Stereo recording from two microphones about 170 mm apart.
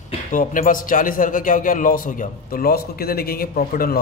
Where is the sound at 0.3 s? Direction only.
50° left (ahead or behind).